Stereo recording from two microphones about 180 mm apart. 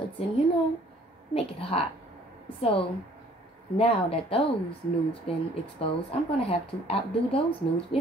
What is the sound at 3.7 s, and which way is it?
A woman's voice, 30° left (ahead or behind).